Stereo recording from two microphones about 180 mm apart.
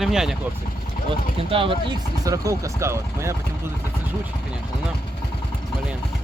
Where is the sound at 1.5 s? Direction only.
30° right (ahead or behind).